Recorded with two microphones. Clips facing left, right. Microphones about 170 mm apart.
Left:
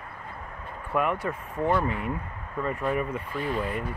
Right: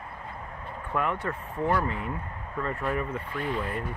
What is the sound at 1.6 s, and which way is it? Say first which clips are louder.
Speech: left 2 dB; 20° left (ahead or behind).